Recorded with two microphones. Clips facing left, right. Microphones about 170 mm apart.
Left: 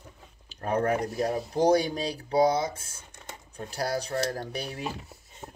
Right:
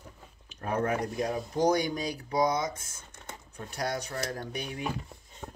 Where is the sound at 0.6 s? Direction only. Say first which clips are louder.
Left 3 dB; 50° left (ahead or behind).